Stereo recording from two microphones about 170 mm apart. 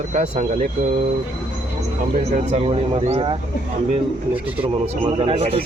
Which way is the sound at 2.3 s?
35° right (ahead or behind).